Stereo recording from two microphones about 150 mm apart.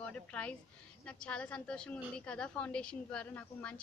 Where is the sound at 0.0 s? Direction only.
10° left (ahead or behind).